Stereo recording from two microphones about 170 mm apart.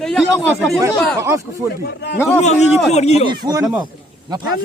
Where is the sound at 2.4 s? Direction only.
40° left (ahead or behind).